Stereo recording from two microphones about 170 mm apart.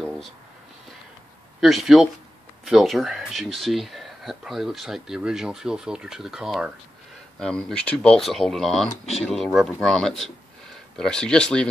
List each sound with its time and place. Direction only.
1.6 s speech: centre (ahead or behind)
8.8 s speech: 40° left (ahead or behind)
9.2 s speech: centre (ahead or behind)